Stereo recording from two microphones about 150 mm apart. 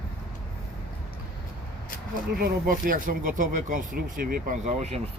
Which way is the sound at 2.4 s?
80° right.